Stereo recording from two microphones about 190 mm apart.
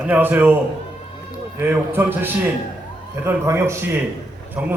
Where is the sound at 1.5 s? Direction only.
10° right (ahead or behind).